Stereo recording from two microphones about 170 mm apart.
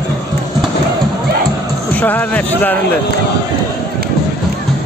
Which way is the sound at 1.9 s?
10° left (ahead or behind).